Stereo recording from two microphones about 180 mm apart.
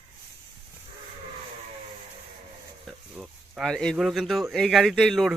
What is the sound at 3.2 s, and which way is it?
Speech, centre (ahead or behind).